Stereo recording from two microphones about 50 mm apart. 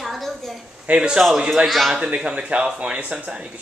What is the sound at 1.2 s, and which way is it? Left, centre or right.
Speech, centre.